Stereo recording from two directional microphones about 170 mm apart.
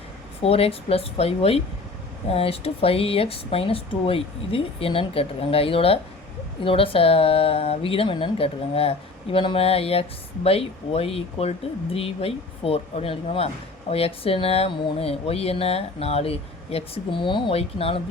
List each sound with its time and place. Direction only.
0.4 s speech: 35° left (ahead or behind)